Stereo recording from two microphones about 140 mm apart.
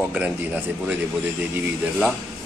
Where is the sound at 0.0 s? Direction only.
10° right (ahead or behind).